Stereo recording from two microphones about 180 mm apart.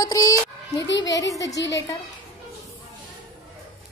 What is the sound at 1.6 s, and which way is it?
Speech, 75° left (ahead or behind).